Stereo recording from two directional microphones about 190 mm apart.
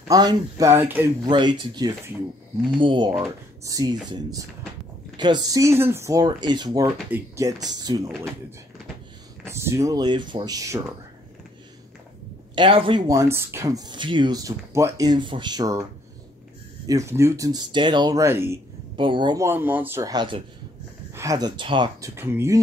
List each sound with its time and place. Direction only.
0.1 s speech: 20° right (ahead or behind)
1.2 s speech: 25° right (ahead or behind)
9.5 s speech: 15° right (ahead or behind)
12.5 s speech: 25° right (ahead or behind)
18.9 s speech: 25° right (ahead or behind)
22.1 s speech: 15° right (ahead or behind)